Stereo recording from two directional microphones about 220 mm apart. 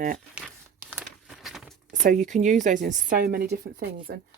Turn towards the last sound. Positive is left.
turn(degrees=-50)  # may be behind; listen again after turning